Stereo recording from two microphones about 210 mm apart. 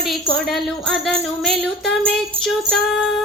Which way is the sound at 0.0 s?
Centre (ahead or behind).